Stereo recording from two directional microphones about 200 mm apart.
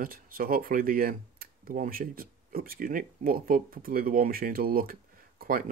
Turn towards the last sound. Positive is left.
turn(degrees=-45)  # may be behind; listen again after turning